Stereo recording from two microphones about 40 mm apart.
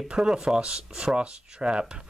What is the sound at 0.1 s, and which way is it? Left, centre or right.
Speech, centre.